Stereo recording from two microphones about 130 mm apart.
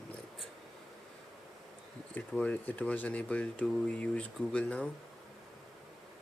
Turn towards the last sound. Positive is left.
turn(degrees=10)  # may be behind; listen again after turning